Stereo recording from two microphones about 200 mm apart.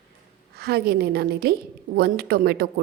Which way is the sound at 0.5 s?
50° right (ahead or behind).